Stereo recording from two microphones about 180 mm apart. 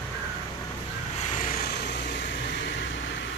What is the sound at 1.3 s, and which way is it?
Vehicle, 45° left (ahead or behind).